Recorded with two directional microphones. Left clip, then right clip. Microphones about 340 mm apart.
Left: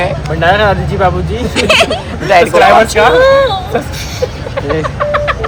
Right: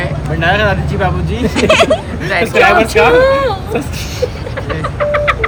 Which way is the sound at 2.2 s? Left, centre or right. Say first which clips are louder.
Left 5 dB; centre.